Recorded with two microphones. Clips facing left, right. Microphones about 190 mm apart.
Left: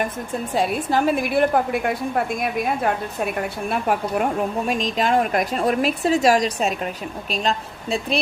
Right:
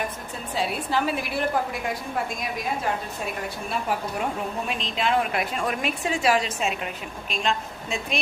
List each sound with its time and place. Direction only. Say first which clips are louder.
0.5 s a woman's voice: left 5 dB; 45° left (ahead or behind)